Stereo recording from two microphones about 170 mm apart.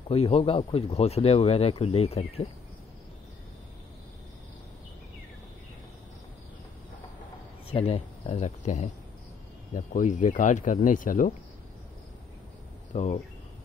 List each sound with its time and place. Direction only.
0.1 s speech: 35° left (ahead or behind)
7.7 s speech: 35° left (ahead or behind)
12.9 s speech: 45° left (ahead or behind)